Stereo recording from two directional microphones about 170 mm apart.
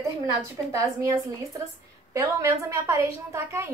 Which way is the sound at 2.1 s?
15° right (ahead or behind).